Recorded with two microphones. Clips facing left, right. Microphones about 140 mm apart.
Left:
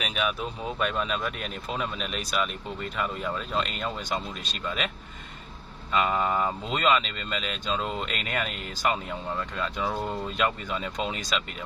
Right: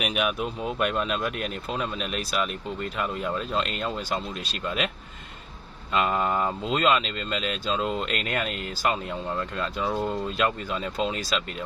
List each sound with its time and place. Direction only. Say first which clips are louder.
0.0 s speech: right 3 dB; 10° right (ahead or behind)
5.9 s speech: right 1 dB; centre (ahead or behind)